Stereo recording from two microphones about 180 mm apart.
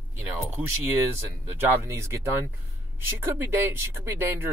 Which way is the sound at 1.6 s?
15° right (ahead or behind).